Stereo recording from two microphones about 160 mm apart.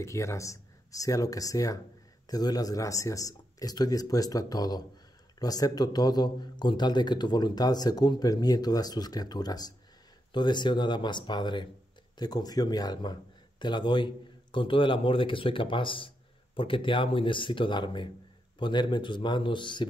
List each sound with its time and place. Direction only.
0.0 s speech: 20° left (ahead or behind)